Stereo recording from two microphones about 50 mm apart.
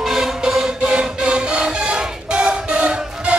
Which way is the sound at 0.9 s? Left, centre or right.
Right.